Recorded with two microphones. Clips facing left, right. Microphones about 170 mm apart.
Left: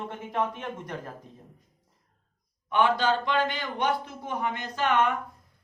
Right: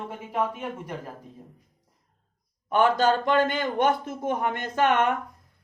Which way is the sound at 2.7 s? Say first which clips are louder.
Right 3 dB; 45° right (ahead or behind).